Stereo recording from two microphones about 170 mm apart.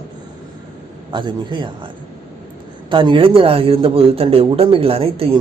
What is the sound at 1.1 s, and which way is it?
Speech, 25° right (ahead or behind).